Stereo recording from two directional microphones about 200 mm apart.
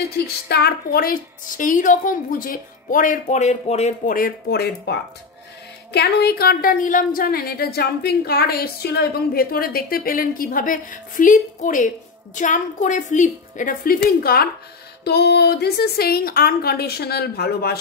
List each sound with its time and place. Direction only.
0.2 s a woman's voice: 50° left (ahead or behind)
5.9 s a woman's voice: 55° left (ahead or behind)